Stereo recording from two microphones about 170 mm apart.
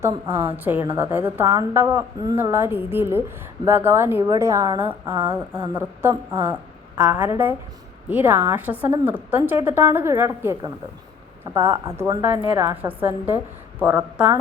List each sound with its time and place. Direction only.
0.0 s a woman's voice: 15° right (ahead or behind)